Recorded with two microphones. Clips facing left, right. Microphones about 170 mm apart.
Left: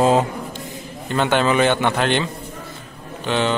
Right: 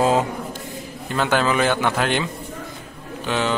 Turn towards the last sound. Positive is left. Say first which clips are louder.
# left 2 dB
turn(degrees=-5)  # may be behind; listen again after turning